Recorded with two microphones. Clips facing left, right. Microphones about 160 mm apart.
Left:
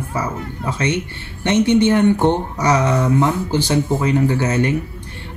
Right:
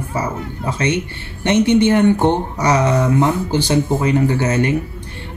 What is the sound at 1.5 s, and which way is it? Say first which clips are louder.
Speech: right 1 dB; 15° right (ahead or behind).